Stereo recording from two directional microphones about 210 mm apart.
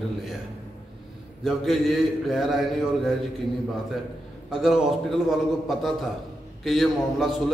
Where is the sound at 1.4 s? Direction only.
Centre (ahead or behind).